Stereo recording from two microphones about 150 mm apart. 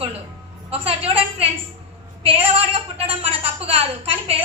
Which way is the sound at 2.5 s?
40° right (ahead or behind).